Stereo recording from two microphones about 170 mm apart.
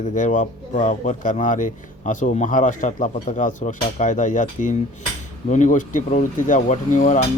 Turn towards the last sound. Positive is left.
turn(degrees=45)  # may be behind; listen again after turning